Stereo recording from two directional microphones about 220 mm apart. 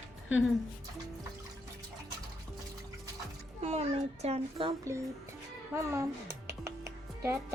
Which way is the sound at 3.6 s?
30° right (ahead or behind).